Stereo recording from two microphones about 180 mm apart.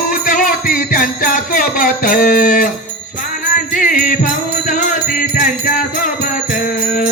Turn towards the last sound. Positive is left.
turn(degrees=45)  # may be behind; listen again after turning